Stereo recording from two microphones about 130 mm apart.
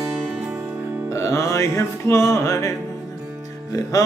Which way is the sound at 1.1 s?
25° left (ahead or behind).